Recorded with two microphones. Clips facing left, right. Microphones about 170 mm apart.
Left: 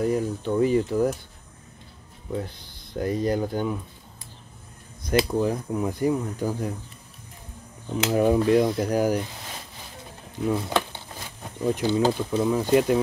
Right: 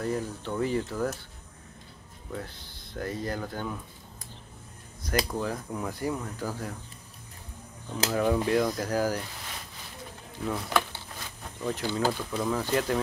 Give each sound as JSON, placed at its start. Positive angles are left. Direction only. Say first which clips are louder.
{"t": 0.0, "sound": "speech", "louder": "left 7 dB", "side_deg": 15}
{"t": 2.3, "sound": "speech", "louder": "left 7 dB", "side_deg": 20}
{"t": 5.3, "sound": "speech", "louder": "left 7 dB", "side_deg": 20}
{"t": 8.1, "sound": "speech", "louder": "left 6 dB", "side_deg": 20}
{"t": 10.5, "sound": "speech", "louder": "left 3 dB", "side_deg": 20}